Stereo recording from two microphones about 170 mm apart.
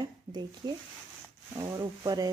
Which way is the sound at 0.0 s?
25° right (ahead or behind).